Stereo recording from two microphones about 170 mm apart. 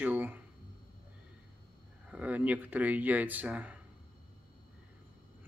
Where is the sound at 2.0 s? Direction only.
10° right (ahead or behind).